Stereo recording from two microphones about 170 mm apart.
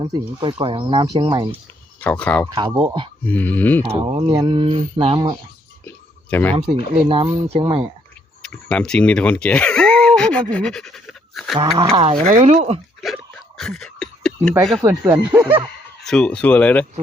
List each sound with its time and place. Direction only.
0.1 s speech: 25° right (ahead or behind)
2.0 s speech: 10° left (ahead or behind)
2.6 s speech: 25° right (ahead or behind)
3.2 s speech: 10° left (ahead or behind)
3.9 s speech: 30° right (ahead or behind)
6.3 s speech: 10° left (ahead or behind)
7.1 s speech: 30° right (ahead or behind)
8.4 s a sound: 5° left (ahead or behind)
10.5 s pant: 5° left (ahead or behind)
11.5 s speech: 30° right (ahead or behind)
13.3 s a sound: centre (ahead or behind)
14.8 s speech: 20° right (ahead or behind)
15.3 s speech: 10° right (ahead or behind)
16.0 s speech: 5° left (ahead or behind)